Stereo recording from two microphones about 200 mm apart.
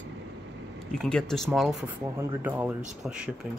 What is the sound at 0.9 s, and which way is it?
Speech, 5° left (ahead or behind).